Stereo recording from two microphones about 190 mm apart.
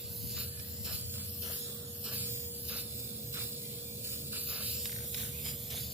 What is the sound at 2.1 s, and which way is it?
Spray, 10° right (ahead or behind).